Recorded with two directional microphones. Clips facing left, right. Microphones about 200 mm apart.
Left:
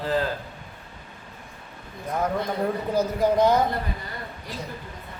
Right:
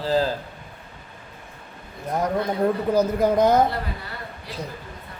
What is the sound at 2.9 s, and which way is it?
Speech, 45° right (ahead or behind).